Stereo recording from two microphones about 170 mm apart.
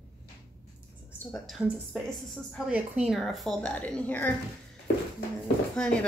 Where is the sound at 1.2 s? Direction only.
Centre (ahead or behind).